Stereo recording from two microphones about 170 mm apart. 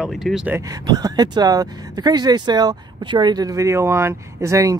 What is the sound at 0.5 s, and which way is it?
Speech, 20° right (ahead or behind).